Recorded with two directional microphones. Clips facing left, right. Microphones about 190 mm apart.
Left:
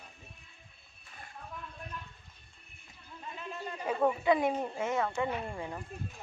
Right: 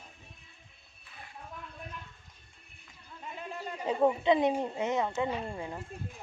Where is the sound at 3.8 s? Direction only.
20° right (ahead or behind).